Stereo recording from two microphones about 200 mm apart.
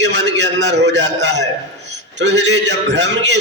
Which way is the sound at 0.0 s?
60° right (ahead or behind).